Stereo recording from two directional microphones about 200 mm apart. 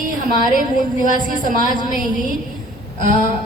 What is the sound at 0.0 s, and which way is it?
A woman's voice, 45° right (ahead or behind).